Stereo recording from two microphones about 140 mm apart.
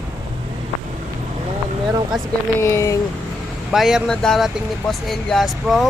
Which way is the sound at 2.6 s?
20° left (ahead or behind).